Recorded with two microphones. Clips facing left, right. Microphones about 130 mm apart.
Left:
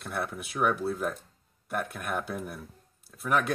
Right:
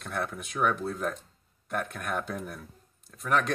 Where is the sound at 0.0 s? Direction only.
5° left (ahead or behind).